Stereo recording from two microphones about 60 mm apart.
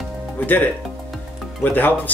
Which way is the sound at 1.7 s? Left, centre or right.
Left.